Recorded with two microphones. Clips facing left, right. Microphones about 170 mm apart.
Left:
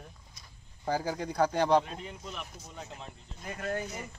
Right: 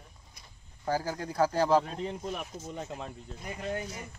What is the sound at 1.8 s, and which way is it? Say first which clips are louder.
Speech: right 6 dB; 40° right (ahead or behind).